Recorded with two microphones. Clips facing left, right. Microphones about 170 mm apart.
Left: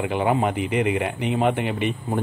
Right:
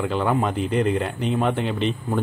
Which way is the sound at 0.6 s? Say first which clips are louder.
Right 1 dB; 70° left (ahead or behind).